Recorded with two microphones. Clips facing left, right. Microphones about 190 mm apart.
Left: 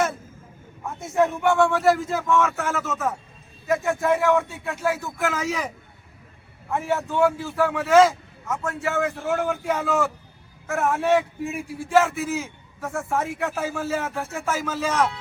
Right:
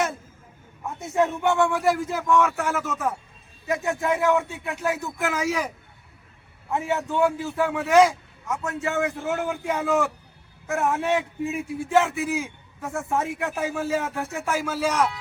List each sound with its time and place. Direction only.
1.1 s a man's voice: 20° right (ahead or behind)
6.7 s a man's voice: 15° right (ahead or behind)